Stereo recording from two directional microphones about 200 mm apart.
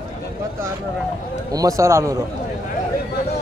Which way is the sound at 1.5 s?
15° right (ahead or behind).